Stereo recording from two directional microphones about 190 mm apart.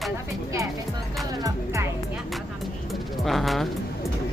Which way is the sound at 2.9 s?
Centre (ahead or behind).